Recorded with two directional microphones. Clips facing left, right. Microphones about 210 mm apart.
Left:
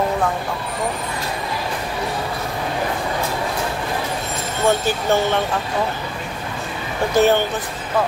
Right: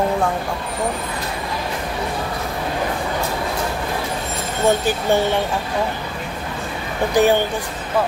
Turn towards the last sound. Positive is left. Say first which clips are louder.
# even
turn(degrees=-15)  # may be behind; listen again after turning